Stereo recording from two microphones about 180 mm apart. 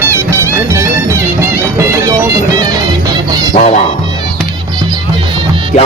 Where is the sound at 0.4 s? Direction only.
15° right (ahead or behind).